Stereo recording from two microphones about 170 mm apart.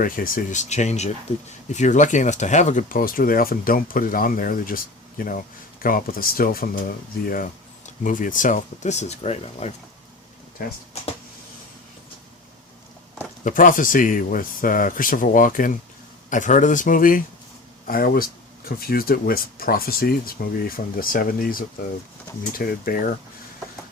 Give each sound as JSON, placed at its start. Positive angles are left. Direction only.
{"t": 0.0, "sound": "speech", "side_deg": 55}
{"t": 10.6, "sound": "speech", "side_deg": 65}
{"t": 13.4, "sound": "speech", "side_deg": 50}